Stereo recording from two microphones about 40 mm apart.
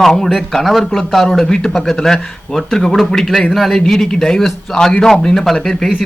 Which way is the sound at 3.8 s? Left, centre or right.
Centre.